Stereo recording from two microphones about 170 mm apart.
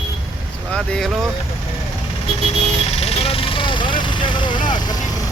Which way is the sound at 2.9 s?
35° left (ahead or behind).